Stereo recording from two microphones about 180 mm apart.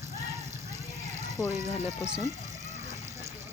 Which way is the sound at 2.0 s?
5° right (ahead or behind).